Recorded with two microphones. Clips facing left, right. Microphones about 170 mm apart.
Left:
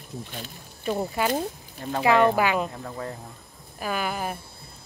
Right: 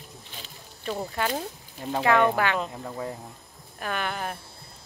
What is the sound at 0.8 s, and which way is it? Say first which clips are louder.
Speech: left 3 dB; 5° left (ahead or behind).